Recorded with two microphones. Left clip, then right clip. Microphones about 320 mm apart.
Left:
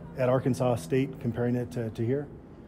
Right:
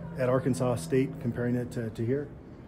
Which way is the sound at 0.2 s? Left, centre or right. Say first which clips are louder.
Left 1 dB; left.